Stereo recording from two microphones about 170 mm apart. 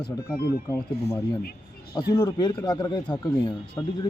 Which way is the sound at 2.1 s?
25° left (ahead or behind).